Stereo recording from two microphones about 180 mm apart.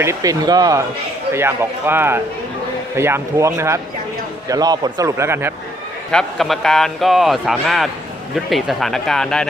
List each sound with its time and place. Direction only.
0.0 s a man's voice: 20° right (ahead or behind)
6.1 s a man's voice: centre (ahead or behind)